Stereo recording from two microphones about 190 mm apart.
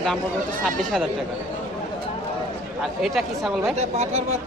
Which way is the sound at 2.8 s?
Centre (ahead or behind).